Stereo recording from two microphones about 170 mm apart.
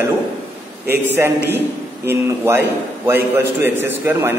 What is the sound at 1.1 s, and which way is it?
A man's voice, 15° right (ahead or behind).